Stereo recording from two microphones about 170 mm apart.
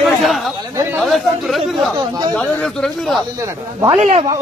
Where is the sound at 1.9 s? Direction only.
25° right (ahead or behind).